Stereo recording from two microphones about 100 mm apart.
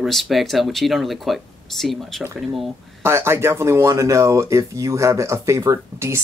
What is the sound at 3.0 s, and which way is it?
Speech, 25° right (ahead or behind).